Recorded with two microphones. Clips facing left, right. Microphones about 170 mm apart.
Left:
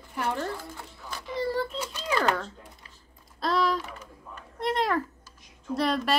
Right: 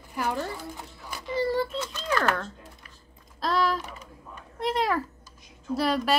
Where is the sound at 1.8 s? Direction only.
10° left (ahead or behind).